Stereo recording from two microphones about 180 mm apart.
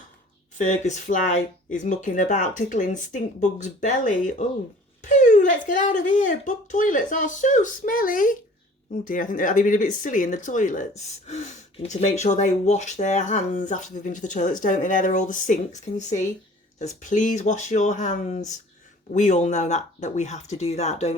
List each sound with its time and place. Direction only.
0.6 s speech: 40° left (ahead or behind)